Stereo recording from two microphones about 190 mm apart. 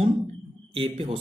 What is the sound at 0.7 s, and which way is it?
Speech, 30° right (ahead or behind).